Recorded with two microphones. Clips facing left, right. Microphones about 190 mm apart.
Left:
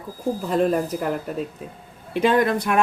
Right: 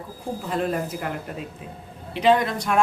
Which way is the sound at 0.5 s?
40° left (ahead or behind).